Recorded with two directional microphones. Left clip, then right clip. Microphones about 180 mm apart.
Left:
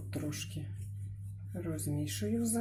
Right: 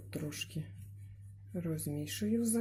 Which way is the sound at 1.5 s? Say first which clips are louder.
Left 1 dB; 50° right (ahead or behind).